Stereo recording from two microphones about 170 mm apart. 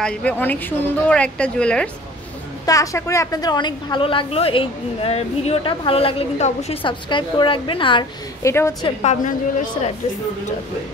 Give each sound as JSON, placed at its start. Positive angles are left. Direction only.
{"t": 0.0, "sound": "a woman's voice", "side_deg": 5}
{"t": 2.6, "sound": "a woman's voice", "side_deg": 20}
{"t": 8.4, "sound": "a woman's voice", "side_deg": 15}
{"t": 8.8, "sound": "a woman's voice", "side_deg": 40}